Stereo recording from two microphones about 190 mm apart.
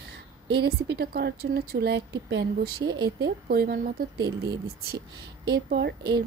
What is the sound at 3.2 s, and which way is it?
Speech, 55° right (ahead or behind).